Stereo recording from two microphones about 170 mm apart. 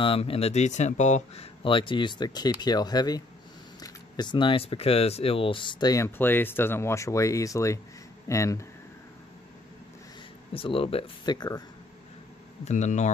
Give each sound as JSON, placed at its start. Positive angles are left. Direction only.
{"t": 0.0, "sound": "speech", "side_deg": 35}
{"t": 10.5, "sound": "speech", "side_deg": 35}
{"t": 12.6, "sound": "speech", "side_deg": 45}